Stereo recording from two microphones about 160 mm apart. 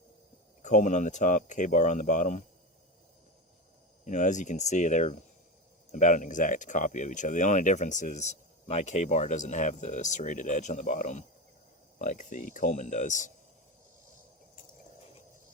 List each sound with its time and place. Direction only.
0.6 s speech: 50° left (ahead or behind)
4.0 s speech: 50° left (ahead or behind)